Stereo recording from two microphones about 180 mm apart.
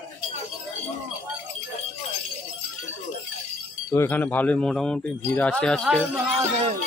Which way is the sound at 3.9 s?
10° left (ahead or behind).